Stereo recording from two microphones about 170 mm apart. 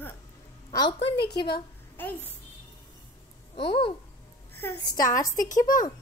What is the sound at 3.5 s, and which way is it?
Speech, 30° left (ahead or behind).